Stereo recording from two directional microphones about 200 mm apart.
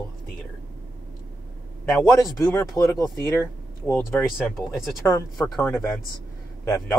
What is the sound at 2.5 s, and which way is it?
Speech, 15° left (ahead or behind).